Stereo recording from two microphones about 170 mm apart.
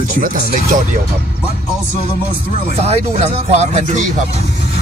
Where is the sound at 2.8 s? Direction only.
40° right (ahead or behind).